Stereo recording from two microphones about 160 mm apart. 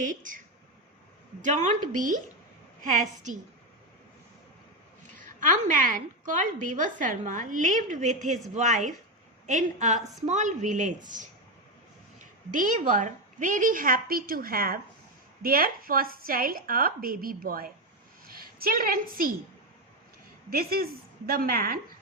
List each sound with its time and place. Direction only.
0.0 s a woman's voice: 55° right (ahead or behind)
1.4 s a woman's voice: 50° right (ahead or behind)
5.1 s a woman's voice: 55° right (ahead or behind)
20.5 s a woman's voice: 70° right (ahead or behind)